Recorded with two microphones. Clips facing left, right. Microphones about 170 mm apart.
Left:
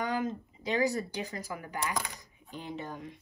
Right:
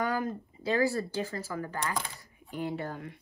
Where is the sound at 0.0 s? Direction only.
20° left (ahead or behind).